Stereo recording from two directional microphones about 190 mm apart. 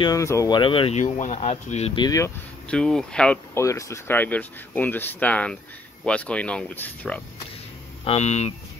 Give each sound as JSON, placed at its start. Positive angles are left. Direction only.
{"t": 0.0, "sound": "speech", "side_deg": 15}
{"t": 2.0, "sound": "speech", "side_deg": 15}
{"t": 2.7, "sound": "speech", "side_deg": 5}
{"t": 3.6, "sound": "speech", "side_deg": 15}
{"t": 8.0, "sound": "speech", "side_deg": 35}